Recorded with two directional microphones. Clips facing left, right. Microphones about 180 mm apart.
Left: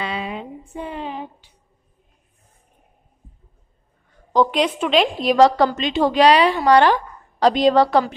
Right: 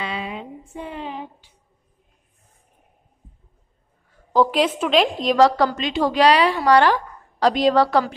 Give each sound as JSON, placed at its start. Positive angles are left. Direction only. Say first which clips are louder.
{"t": 0.0, "sound": "a sound", "louder": "left 2 dB", "side_deg": 40}
{"t": 4.1, "sound": "a woman's voice", "louder": "even", "side_deg": -5}
{"t": 5.3, "sound": "a woman's voice", "louder": "left 2 dB", "side_deg": 20}